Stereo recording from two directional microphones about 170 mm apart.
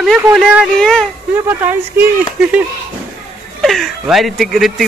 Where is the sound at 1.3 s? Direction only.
10° right (ahead or behind).